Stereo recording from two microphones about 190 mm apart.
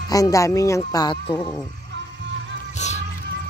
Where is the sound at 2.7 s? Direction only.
35° left (ahead or behind).